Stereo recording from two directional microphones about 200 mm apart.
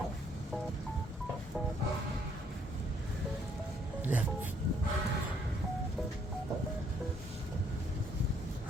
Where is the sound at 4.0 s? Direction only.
10° right (ahead or behind).